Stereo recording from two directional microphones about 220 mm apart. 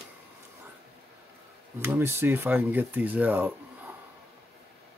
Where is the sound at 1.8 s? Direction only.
10° right (ahead or behind).